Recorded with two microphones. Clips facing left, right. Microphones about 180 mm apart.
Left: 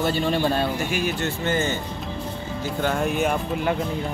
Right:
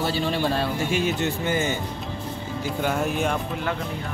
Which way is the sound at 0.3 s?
Centre (ahead or behind).